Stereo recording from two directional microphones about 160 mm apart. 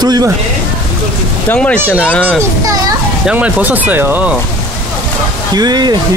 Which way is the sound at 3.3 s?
10° right (ahead or behind).